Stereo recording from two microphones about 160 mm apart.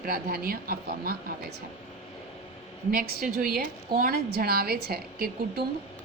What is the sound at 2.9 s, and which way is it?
A woman's voice, 65° right (ahead or behind).